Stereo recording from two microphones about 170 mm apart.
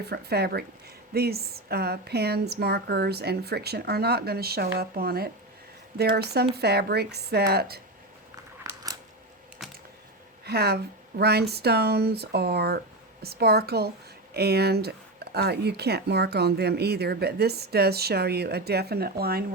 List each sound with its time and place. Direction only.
0.0 s speech: 70° right (ahead or behind)
8.7 s a sound: 20° right (ahead or behind)
10.4 s speech: 70° right (ahead or behind)